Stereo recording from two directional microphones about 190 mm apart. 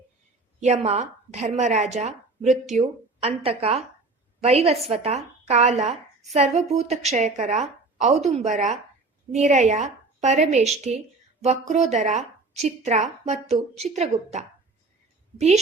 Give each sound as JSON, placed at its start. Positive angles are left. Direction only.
{"t": 0.6, "sound": "a woman's voice", "side_deg": -35}